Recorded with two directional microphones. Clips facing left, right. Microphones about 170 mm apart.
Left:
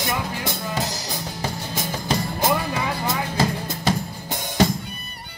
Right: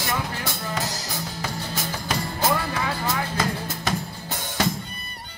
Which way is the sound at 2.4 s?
15° left (ahead or behind).